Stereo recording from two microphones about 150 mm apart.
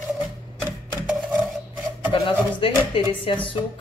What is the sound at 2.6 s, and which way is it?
Speech, 35° left (ahead or behind).